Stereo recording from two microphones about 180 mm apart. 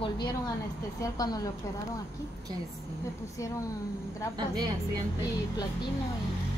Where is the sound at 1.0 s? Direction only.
20° left (ahead or behind).